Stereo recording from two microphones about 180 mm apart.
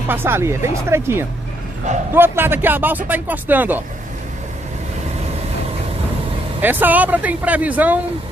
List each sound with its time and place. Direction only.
0.1 s speech: 10° right (ahead or behind)
6.6 s speech: 10° right (ahead or behind)